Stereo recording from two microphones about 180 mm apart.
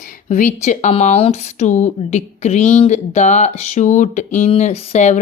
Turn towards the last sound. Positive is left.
turn(degrees=40)  # may be behind; listen again after turning